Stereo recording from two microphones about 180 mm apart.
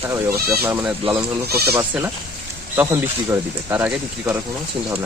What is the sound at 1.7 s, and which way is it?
Speech, 10° right (ahead or behind).